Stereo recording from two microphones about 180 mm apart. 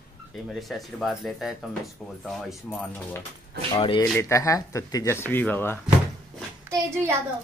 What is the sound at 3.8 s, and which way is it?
Speech, 30° left (ahead or behind).